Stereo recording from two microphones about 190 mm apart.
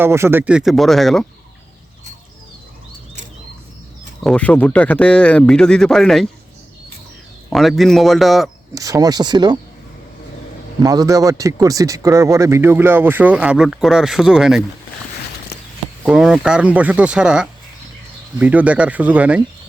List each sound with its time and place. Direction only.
0.0 s speech: 15° right (ahead or behind)
4.2 s speech: 5° left (ahead or behind)
7.5 s speech: centre (ahead or behind)
8.7 s speech: 20° right (ahead or behind)
10.8 s speech: 20° right (ahead or behind)
16.0 s speech: 5° right (ahead or behind)